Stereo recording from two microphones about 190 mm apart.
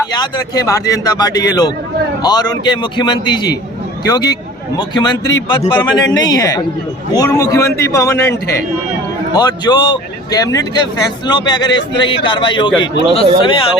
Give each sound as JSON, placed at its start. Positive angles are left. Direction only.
{"t": 0.1, "sound": "speech", "side_deg": 20}